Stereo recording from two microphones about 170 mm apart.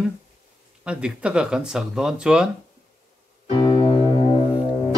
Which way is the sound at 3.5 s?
30° left (ahead or behind).